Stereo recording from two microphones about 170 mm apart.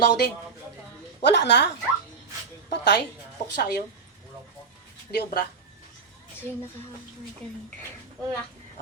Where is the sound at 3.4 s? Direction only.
70° left (ahead or behind).